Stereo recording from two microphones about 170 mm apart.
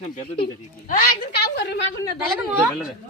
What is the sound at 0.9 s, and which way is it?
Speech, 60° left (ahead or behind).